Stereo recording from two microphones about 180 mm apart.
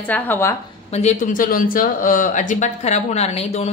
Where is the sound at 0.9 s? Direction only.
40° left (ahead or behind).